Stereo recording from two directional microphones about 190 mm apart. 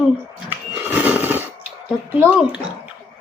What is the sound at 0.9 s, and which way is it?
Neigh, 10° right (ahead or behind).